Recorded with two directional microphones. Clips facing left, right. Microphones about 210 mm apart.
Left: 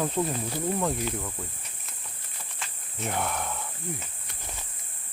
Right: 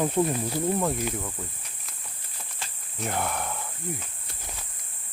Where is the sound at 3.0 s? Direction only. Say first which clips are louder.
Right 1 dB; centre (ahead or behind).